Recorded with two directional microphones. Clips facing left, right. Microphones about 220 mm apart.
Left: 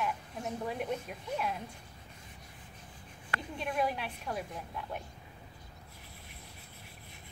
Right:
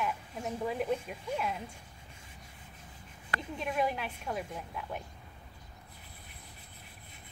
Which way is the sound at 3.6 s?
Centre (ahead or behind).